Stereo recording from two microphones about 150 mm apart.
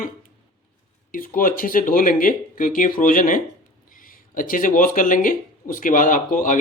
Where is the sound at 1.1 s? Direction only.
65° left (ahead or behind).